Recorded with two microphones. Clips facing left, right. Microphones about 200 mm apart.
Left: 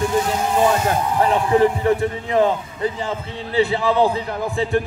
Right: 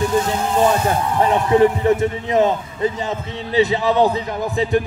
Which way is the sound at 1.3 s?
20° right (ahead or behind).